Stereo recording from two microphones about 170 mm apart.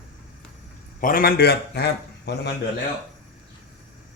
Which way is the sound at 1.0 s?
60° left (ahead or behind).